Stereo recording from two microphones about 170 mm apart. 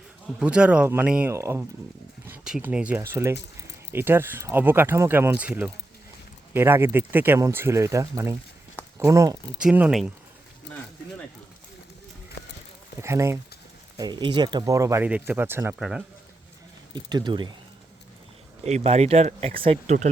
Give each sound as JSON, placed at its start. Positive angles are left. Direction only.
{"t": 0.3, "sound": "speech", "side_deg": -5}
{"t": 9.6, "sound": "speech", "side_deg": -5}
{"t": 13.0, "sound": "speech", "side_deg": -15}
{"t": 16.9, "sound": "speech", "side_deg": -25}
{"t": 18.6, "sound": "speech", "side_deg": -40}